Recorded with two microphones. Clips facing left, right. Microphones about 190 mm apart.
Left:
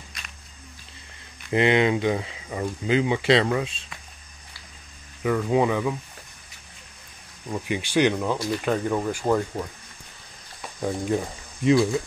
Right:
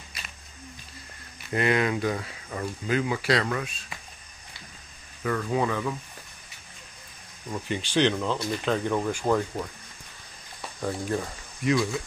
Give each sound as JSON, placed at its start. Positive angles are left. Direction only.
{"t": 1.5, "sound": "speech", "side_deg": 25}
{"t": 5.2, "sound": "speech", "side_deg": 15}
{"t": 7.5, "sound": "speech", "side_deg": 10}
{"t": 10.8, "sound": "speech", "side_deg": 15}
{"t": 11.6, "sound": "speech", "side_deg": 25}